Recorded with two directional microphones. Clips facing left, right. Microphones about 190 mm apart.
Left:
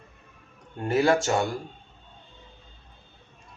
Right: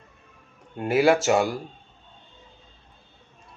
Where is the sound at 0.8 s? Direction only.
10° right (ahead or behind).